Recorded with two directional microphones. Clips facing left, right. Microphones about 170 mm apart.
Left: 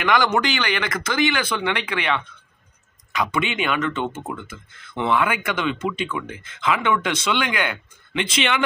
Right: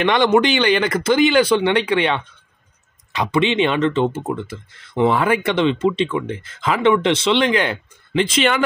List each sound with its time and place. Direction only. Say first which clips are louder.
0.0 s speech: right 5 dB; 25° right (ahead or behind)